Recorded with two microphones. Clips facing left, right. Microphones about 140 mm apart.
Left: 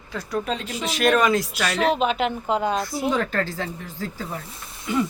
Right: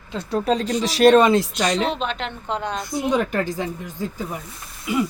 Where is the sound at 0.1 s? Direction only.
25° right (ahead or behind).